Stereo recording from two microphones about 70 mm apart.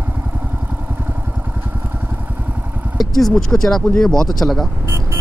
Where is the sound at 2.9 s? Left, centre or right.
Centre.